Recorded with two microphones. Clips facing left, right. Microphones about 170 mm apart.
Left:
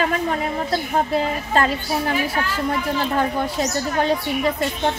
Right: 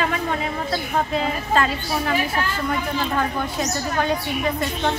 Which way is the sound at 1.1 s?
40° left (ahead or behind).